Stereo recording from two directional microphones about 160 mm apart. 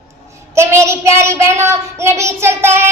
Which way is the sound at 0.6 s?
15° right (ahead or behind).